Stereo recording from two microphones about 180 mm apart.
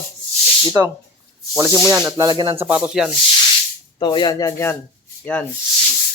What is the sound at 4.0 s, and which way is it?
Speech, 25° left (ahead or behind).